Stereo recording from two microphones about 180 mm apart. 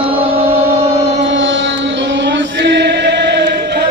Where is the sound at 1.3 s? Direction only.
90° right; by 3.8 s 70° right (ahead or behind).